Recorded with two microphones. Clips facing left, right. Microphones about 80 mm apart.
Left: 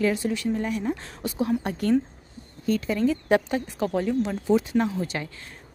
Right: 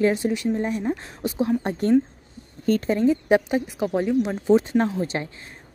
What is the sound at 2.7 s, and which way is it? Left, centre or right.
Speech, right.